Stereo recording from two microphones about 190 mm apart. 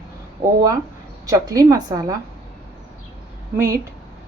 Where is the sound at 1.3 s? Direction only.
20° right (ahead or behind).